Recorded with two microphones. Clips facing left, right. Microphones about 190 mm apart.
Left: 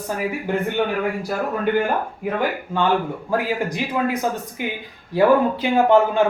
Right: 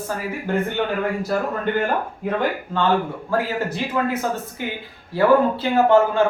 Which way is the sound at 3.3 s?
15° left (ahead or behind).